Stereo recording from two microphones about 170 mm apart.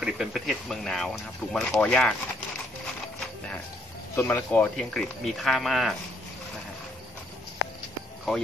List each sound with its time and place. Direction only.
0.0 s speech: 5° right (ahead or behind)
4.1 s speech: 15° left (ahead or behind); by 5.9 s centre (ahead or behind)